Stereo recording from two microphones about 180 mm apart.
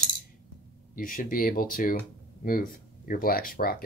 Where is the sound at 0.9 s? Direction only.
50° left (ahead or behind).